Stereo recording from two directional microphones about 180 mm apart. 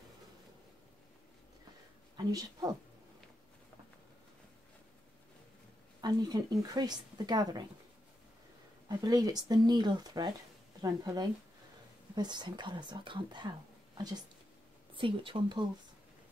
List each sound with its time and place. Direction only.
2.1 s speech: 20° right (ahead or behind)
5.9 s speech: 20° right (ahead or behind)
8.8 s speech: 20° right (ahead or behind)